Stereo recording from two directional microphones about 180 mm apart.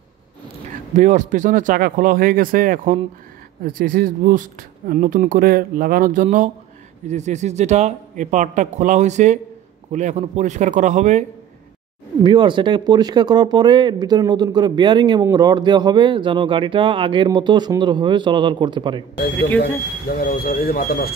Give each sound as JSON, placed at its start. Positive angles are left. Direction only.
{"t": 0.9, "sound": "a man's voice", "side_deg": -45}
{"t": 12.2, "sound": "speech", "side_deg": -25}
{"t": 19.6, "sound": "speech", "side_deg": 55}